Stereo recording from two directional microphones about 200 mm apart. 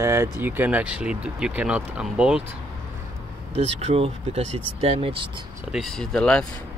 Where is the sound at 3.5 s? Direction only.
30° right (ahead or behind).